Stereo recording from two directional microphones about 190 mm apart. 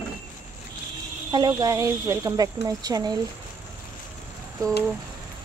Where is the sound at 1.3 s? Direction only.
20° right (ahead or behind).